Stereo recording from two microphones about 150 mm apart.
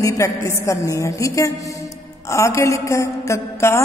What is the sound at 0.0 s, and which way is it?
A woman's voice, 20° left (ahead or behind).